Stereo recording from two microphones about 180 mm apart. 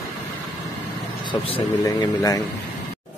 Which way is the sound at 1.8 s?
20° left (ahead or behind).